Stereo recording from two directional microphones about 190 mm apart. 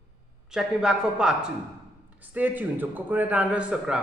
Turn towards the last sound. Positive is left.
turn(degrees=-5)  # may be behind; listen again after turning